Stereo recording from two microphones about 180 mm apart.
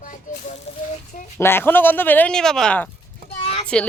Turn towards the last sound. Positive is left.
turn(degrees=35)  # may be behind; listen again after turning